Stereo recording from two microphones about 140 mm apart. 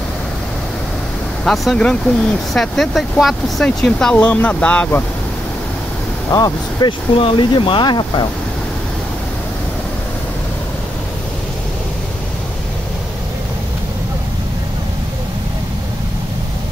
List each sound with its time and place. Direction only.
1.4 s speech: centre (ahead or behind)
6.3 s speech: 30° left (ahead or behind)